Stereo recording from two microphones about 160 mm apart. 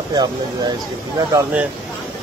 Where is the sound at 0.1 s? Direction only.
25° right (ahead or behind).